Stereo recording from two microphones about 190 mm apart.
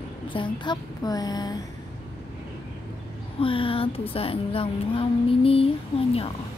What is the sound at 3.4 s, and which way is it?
Speech, 30° left (ahead or behind).